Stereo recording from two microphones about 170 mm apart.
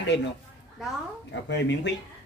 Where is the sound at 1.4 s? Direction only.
90° left.